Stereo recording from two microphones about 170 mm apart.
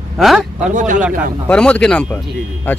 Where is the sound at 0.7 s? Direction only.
50° right (ahead or behind).